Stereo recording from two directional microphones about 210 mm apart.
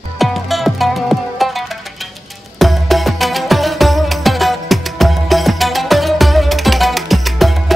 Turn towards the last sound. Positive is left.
turn(degrees=0)  # may be behind; listen again after turning